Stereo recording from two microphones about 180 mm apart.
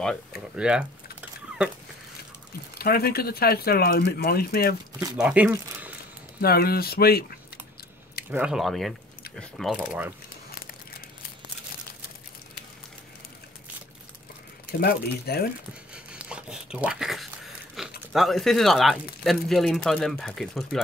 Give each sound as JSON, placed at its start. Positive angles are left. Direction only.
{"t": 0.0, "sound": "speech", "side_deg": 0}
{"t": 2.8, "sound": "speech", "side_deg": 60}
{"t": 5.1, "sound": "speech", "side_deg": -5}
{"t": 6.4, "sound": "speech", "side_deg": 60}
{"t": 8.3, "sound": "speech", "side_deg": -5}
{"t": 14.8, "sound": "speech", "side_deg": 60}
{"t": 15.9, "sound": "a sound", "side_deg": -5}
{"t": 17.8, "sound": "crumpling", "side_deg": 0}
{"t": 18.1, "sound": "speech", "side_deg": 0}